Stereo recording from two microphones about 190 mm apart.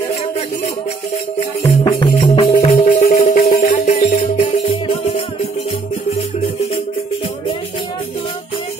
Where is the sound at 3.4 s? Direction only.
40° left (ahead or behind).